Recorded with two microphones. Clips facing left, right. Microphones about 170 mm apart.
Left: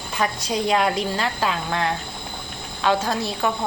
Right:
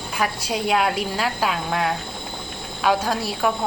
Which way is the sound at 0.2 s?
5° right (ahead or behind).